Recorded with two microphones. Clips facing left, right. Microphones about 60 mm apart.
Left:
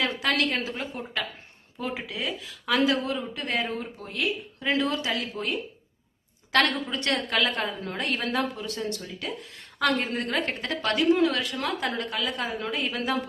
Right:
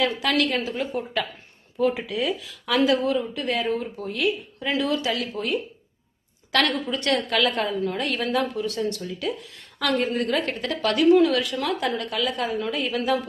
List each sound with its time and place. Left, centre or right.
0.0 s a woman's voice: left
1.8 s speech: centre
2.4 s a woman's voice: left
8.0 s a woman's voice: left